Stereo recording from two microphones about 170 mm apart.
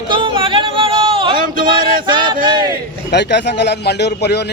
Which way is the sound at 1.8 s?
55° right (ahead or behind).